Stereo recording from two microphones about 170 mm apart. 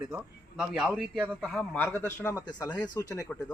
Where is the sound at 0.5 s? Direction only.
Centre (ahead or behind).